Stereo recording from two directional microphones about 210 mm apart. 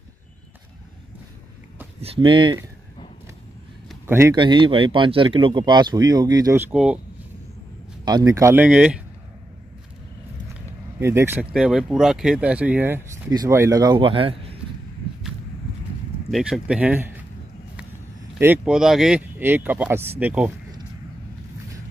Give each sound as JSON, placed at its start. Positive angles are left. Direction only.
{"t": 2.0, "sound": "speech", "side_deg": -25}
{"t": 4.1, "sound": "speech", "side_deg": -15}
{"t": 6.7, "sound": "speech", "side_deg": -5}
{"t": 8.0, "sound": "speech", "side_deg": -20}
{"t": 11.0, "sound": "speech", "side_deg": -10}
{"t": 16.3, "sound": "speech", "side_deg": 0}
{"t": 18.4, "sound": "speech", "side_deg": -5}